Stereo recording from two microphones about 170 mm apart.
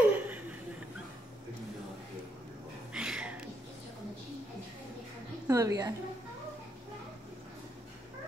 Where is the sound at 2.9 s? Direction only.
5° right (ahead or behind).